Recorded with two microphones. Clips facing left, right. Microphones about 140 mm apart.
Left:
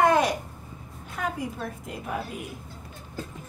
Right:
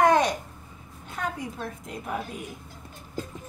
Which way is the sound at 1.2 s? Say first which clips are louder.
Left 1 dB; 5° left (ahead or behind).